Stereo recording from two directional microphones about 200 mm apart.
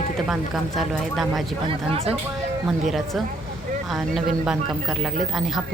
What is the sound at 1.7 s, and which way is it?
Speech, 30° right (ahead or behind).